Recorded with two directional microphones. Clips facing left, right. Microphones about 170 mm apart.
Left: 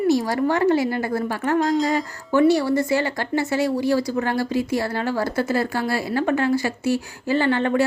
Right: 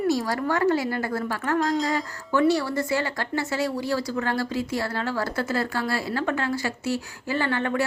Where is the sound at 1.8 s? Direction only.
20° left (ahead or behind).